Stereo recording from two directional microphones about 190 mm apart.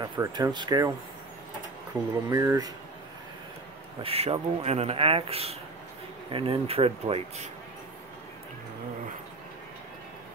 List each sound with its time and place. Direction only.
0.0 s speech: 20° right (ahead or behind)
2.2 s speech: 15° right (ahead or behind)
4.0 s speech: 30° right (ahead or behind)